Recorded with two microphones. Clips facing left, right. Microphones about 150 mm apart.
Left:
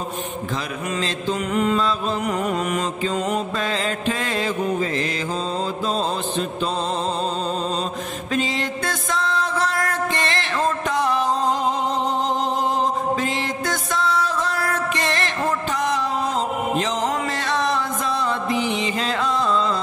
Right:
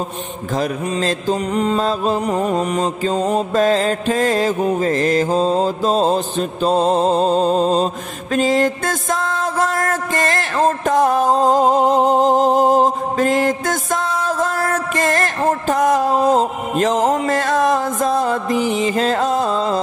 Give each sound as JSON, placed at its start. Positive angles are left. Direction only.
{"t": 0.6, "sound": "mantra", "side_deg": -40}
{"t": 8.4, "sound": "music", "side_deg": -45}